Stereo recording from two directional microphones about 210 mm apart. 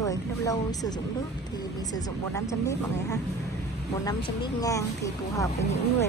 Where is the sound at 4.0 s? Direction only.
15° left (ahead or behind).